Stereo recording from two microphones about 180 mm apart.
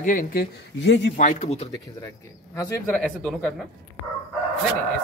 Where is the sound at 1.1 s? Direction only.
40° left (ahead or behind).